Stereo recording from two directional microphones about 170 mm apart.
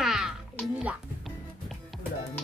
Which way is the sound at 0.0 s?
Centre (ahead or behind).